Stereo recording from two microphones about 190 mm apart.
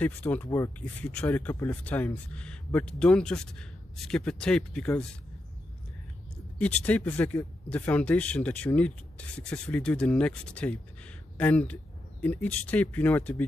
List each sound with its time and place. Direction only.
0.0 s speech: 10° left (ahead or behind)
6.6 s speech: 5° left (ahead or behind)